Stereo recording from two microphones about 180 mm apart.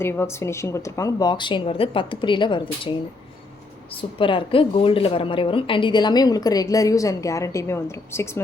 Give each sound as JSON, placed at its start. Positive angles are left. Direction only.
{"t": 0.0, "sound": "a woman's voice", "side_deg": 15}
{"t": 4.2, "sound": "a woman's voice", "side_deg": 30}